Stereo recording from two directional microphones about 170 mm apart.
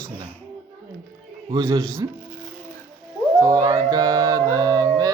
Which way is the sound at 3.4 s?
20° right (ahead or behind).